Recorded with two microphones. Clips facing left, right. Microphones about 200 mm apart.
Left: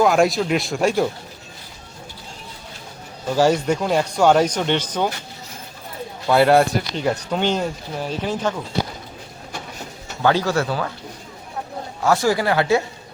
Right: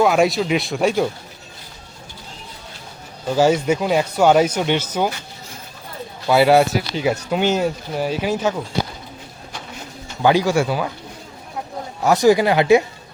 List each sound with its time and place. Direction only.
0.0 s speech: centre (ahead or behind)
3.2 s speech: 5° right (ahead or behind)
6.2 s speech: 5° right (ahead or behind)
10.2 s speech: 15° right (ahead or behind)
12.0 s speech: 20° right (ahead or behind)